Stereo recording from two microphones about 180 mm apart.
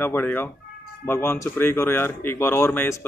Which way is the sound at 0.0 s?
10° left (ahead or behind).